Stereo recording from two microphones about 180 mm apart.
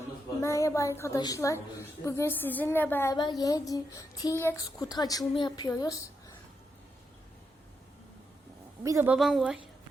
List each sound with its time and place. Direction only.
0.4 s a woman's voice: 15° left (ahead or behind)
3.2 s speech: 25° left (ahead or behind)
8.8 s a woman's voice: 15° right (ahead or behind)